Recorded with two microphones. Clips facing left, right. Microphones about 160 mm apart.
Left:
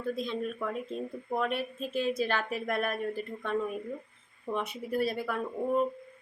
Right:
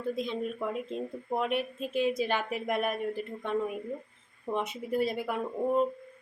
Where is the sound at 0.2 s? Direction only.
15° right (ahead or behind).